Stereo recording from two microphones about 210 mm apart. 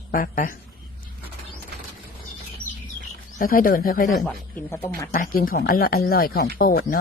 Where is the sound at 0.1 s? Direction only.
40° left (ahead or behind).